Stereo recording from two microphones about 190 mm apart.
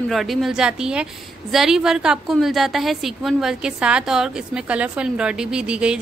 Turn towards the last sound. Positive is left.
turn(degrees=-5)  # may be behind; listen again after turning